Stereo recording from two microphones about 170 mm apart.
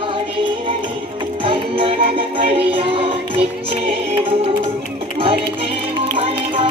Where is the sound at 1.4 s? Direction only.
30° right (ahead or behind).